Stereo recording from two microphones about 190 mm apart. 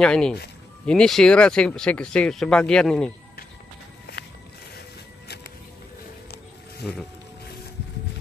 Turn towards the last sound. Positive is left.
turn(degrees=60)  # may be behind; listen again after turning